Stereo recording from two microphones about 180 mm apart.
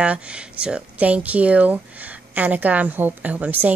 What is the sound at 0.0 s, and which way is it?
Speech, 5° right (ahead or behind).